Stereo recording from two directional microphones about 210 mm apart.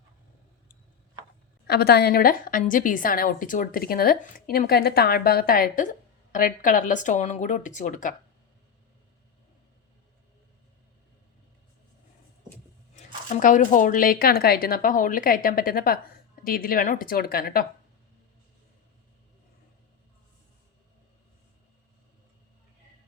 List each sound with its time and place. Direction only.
1.6 s a woman's voice: 50° left (ahead or behind)
13.3 s speech: 40° left (ahead or behind)